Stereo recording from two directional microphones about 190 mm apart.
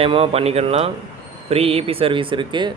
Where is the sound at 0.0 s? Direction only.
30° right (ahead or behind).